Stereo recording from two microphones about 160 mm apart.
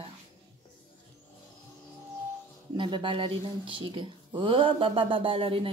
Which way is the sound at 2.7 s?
30° right (ahead or behind).